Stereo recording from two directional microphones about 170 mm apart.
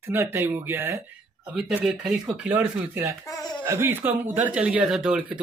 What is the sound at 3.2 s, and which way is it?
Speech, 20° left (ahead or behind).